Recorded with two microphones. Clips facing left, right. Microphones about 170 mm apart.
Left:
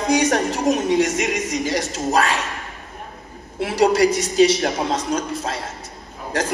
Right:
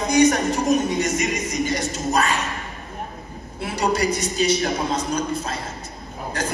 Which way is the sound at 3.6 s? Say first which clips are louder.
Left 6 dB; 85° left.